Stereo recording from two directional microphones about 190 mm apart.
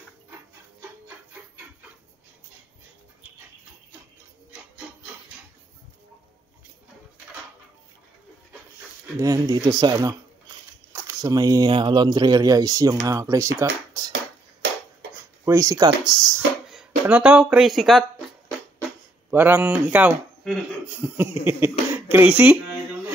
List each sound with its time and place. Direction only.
9.1 s speech: 20° right (ahead or behind)
14.1 s a sound: 65° right (ahead or behind)
15.4 s speech: 15° right (ahead or behind)
16.7 s speech: 5° right (ahead or behind)
19.3 s speech: 10° right (ahead or behind)